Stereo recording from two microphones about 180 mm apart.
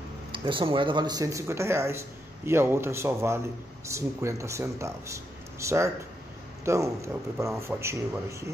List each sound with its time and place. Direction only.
0.3 s speech: 30° right (ahead or behind)